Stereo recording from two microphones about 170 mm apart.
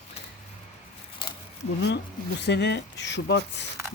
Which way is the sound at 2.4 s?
85° left.